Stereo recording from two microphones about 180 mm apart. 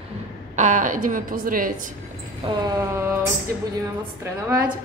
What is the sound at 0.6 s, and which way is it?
A woman's voice, 45° right (ahead or behind).